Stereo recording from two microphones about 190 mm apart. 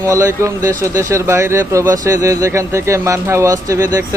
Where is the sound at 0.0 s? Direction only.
15° right (ahead or behind).